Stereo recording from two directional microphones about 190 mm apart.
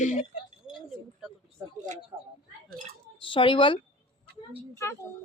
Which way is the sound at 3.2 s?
25° left (ahead or behind).